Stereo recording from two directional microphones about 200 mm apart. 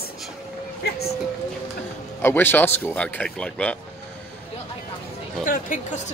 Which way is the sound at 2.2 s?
10° left (ahead or behind).